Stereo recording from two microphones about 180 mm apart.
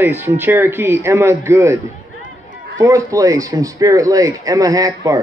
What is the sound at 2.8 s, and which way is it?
Speech, 15° right (ahead or behind).